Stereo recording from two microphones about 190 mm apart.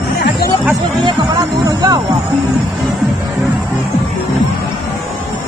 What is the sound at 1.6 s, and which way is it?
Music, 20° right (ahead or behind).